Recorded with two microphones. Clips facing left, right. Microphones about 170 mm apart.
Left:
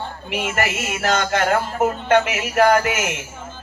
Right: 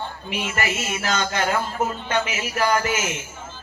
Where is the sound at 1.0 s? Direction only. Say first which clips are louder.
Left 5 dB; 60° left (ahead or behind).